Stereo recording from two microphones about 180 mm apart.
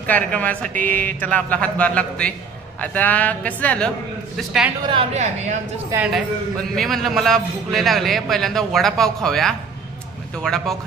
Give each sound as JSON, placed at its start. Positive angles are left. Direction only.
{"t": 0.0, "sound": "a man's voice", "side_deg": 10}
{"t": 4.8, "sound": "a woman's voice", "side_deg": -35}
{"t": 5.9, "sound": "speech", "side_deg": -15}
{"t": 6.7, "sound": "a man's voice", "side_deg": 0}